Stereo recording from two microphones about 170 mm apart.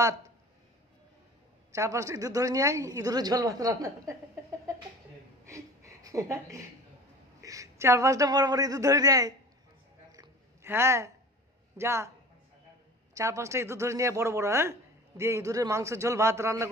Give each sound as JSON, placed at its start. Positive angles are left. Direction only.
{"t": 1.7, "sound": "a woman's voice", "side_deg": -20}
{"t": 5.4, "sound": "a sound", "side_deg": -20}
{"t": 7.4, "sound": "a woman's voice", "side_deg": -20}
{"t": 10.1, "sound": "a sound", "side_deg": -20}
{"t": 11.7, "sound": "speech", "side_deg": -15}
{"t": 13.1, "sound": "speech", "side_deg": -15}